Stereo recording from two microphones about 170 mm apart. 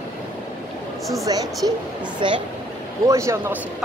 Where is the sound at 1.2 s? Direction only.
20° right (ahead or behind).